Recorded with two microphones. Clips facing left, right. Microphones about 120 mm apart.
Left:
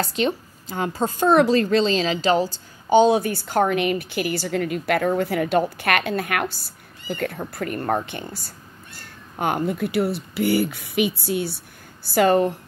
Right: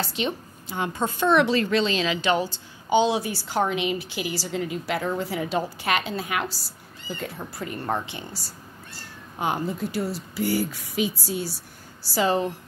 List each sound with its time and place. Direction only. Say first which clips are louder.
0.2 s a woman's voice: left 5 dB; 40° left (ahead or behind); by 12.5 s 55° left (ahead or behind)